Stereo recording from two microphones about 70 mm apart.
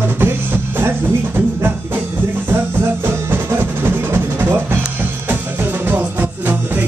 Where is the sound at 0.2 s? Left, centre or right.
Right.